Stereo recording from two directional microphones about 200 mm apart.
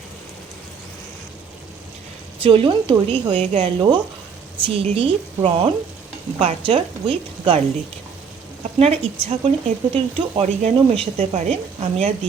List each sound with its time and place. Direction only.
2.4 s a woman's voice: 25° right (ahead or behind)
8.8 s speech: 30° right (ahead or behind)